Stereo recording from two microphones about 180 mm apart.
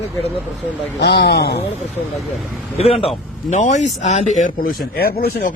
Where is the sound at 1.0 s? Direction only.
70° left (ahead or behind).